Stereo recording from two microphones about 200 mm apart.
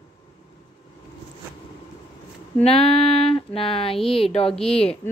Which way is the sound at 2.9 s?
25° left (ahead or behind).